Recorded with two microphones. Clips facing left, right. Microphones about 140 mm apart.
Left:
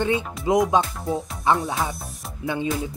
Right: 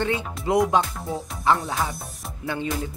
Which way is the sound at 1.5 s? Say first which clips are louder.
Left 1 dB; centre (ahead or behind).